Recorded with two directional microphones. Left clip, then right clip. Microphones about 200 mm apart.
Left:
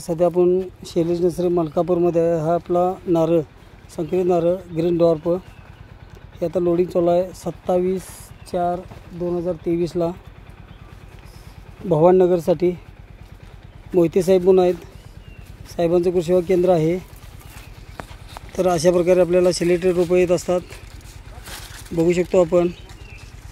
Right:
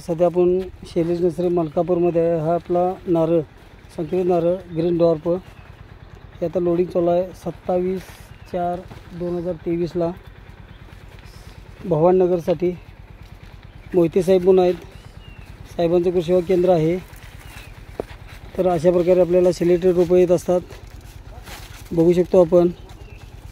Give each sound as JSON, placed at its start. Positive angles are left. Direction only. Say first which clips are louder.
{"t": 0.0, "sound": "speech", "louder": "even", "side_deg": 5}
{"t": 6.4, "sound": "speech", "louder": "left 1 dB", "side_deg": 0}
{"t": 11.9, "sound": "speech", "louder": "left 2 dB", "side_deg": 15}
{"t": 13.9, "sound": "speech", "louder": "even", "side_deg": 0}
{"t": 18.5, "sound": "speech", "louder": "even", "side_deg": 0}